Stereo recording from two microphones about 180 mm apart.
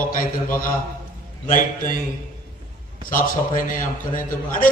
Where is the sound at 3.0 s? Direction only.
50° left (ahead or behind).